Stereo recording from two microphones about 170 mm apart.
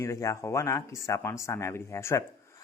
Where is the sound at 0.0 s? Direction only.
20° left (ahead or behind).